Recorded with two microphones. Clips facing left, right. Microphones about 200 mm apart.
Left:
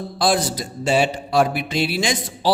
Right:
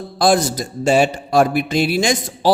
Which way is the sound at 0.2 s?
45° right (ahead or behind).